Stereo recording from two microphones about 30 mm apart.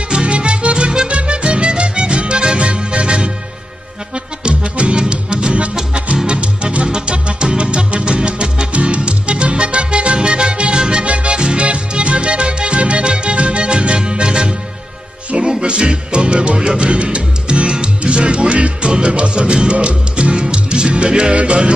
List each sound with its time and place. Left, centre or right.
0.3 s music: right
11.6 s music: right
15.6 s music: right